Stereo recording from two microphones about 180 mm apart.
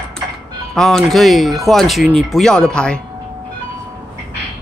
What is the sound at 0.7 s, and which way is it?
Speech, centre (ahead or behind).